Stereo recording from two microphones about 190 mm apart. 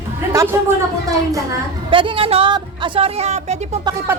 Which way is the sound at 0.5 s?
15° right (ahead or behind).